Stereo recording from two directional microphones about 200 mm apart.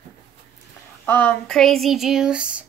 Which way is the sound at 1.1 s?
10° left (ahead or behind).